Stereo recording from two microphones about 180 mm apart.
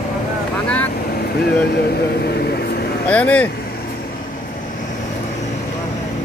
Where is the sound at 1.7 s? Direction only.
65° left (ahead or behind).